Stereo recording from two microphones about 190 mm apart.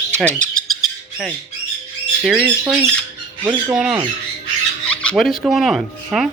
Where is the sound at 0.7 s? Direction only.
Centre (ahead or behind).